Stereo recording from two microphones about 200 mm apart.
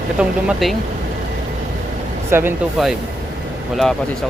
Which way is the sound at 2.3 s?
10° right (ahead or behind).